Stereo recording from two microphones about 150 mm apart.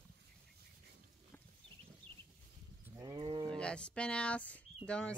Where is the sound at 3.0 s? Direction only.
25° right (ahead or behind).